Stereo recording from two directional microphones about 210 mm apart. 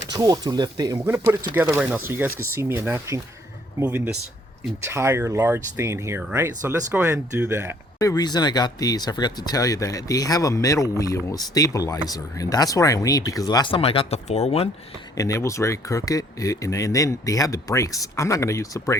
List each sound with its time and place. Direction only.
0.0 s speech: 15° right (ahead or behind)
2.3 s speech: 90° right
2.6 s speech: 10° right (ahead or behind)
7.9 s speech: 15° left (ahead or behind)
15.1 s speech: 15° left (ahead or behind)